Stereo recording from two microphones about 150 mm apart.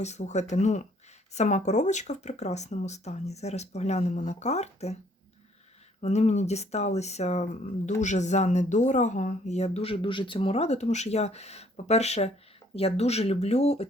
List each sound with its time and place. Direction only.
0.0 s speech: 50° left (ahead or behind)
6.0 s speech: 45° left (ahead or behind)